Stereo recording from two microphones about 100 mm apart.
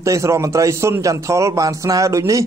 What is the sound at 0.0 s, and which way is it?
A man's voice, 30° right (ahead or behind).